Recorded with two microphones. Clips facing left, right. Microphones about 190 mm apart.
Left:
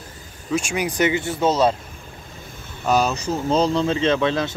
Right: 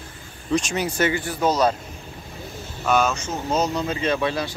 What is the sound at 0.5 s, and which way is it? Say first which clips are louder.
Speech: left 1 dB; 10° left (ahead or behind).